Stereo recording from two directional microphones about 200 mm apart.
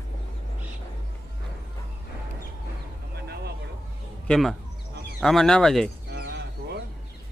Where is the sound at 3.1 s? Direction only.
55° right (ahead or behind).